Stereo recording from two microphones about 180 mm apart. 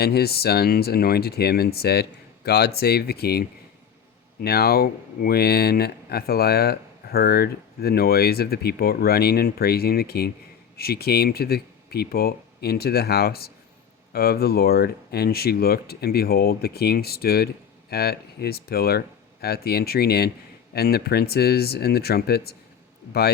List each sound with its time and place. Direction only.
0.0 s speech: 60° left (ahead or behind)